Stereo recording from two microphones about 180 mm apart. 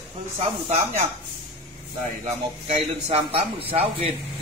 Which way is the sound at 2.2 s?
35° right (ahead or behind).